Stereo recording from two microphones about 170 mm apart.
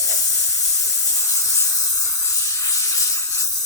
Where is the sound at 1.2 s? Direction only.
15° left (ahead or behind).